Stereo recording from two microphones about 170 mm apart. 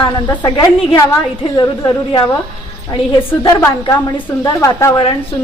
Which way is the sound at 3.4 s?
20° left (ahead or behind).